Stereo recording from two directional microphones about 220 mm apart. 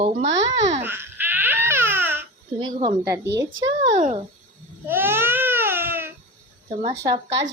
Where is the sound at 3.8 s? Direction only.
30° right (ahead or behind).